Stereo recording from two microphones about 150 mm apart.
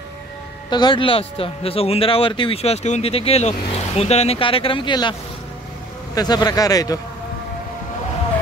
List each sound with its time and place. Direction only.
0.7 s speech: 30° left (ahead or behind)
6.1 s speech: 25° left (ahead or behind)